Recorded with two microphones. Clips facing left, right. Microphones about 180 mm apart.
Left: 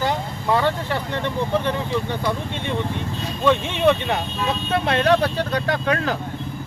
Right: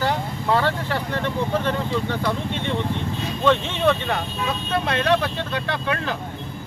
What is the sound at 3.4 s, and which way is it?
Speech, 15° left (ahead or behind).